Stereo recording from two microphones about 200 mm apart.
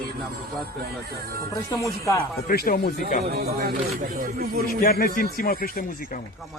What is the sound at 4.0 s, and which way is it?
Speech, 45° right (ahead or behind).